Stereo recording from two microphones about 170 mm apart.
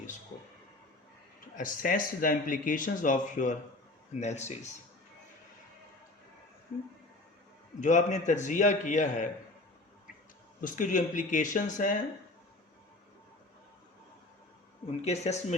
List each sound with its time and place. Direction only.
1.5 s speech: 55° left (ahead or behind)
7.8 s speech: 45° left (ahead or behind)
10.6 s speech: 50° left (ahead or behind)
14.8 s speech: 40° left (ahead or behind)